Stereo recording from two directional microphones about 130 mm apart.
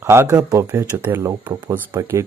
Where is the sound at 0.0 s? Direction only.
20° right (ahead or behind).